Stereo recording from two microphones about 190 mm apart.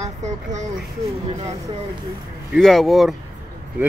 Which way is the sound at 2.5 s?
Centre (ahead or behind).